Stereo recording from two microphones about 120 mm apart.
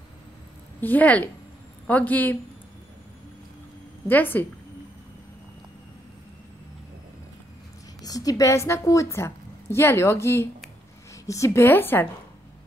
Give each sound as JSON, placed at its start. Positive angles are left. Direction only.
{"t": 0.7, "sound": "a woman's voice", "side_deg": 15}
{"t": 4.1, "sound": "a woman's voice", "side_deg": 15}
{"t": 8.0, "sound": "a woman's voice", "side_deg": 30}